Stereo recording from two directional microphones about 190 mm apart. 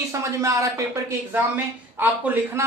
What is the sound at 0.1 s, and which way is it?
A woman's voice, 15° right (ahead or behind).